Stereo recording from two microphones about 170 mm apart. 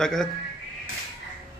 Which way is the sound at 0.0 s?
5° left (ahead or behind).